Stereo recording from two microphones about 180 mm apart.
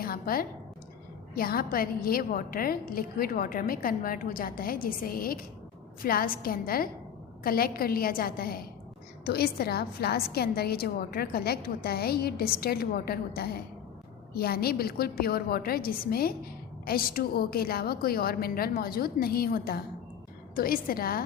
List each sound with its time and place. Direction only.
0.0 s a woman's voice: 55° left (ahead or behind)